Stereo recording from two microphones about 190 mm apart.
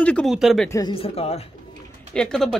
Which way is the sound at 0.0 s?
5° left (ahead or behind).